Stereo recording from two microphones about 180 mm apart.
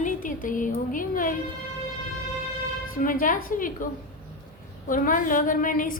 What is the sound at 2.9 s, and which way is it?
Speech, 50° left (ahead or behind).